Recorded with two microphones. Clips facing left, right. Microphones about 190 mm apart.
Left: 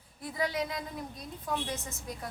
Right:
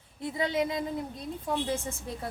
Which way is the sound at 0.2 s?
25° right (ahead or behind).